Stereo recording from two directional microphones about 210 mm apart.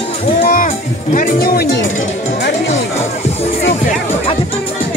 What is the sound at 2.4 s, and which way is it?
Music, 60° left (ahead or behind).